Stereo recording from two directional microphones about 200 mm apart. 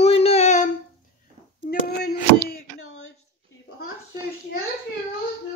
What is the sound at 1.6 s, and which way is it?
Speech, 50° left (ahead or behind).